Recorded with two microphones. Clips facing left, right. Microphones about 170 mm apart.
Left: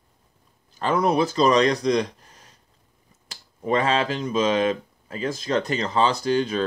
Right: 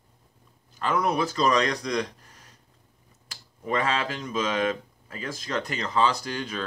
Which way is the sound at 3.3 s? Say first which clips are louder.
Left 5 dB; 25° left (ahead or behind).